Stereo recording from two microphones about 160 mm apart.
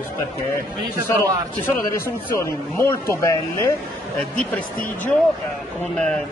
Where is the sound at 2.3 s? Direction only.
15° left (ahead or behind).